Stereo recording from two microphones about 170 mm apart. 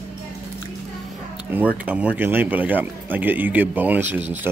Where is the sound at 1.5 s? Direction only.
10° right (ahead or behind).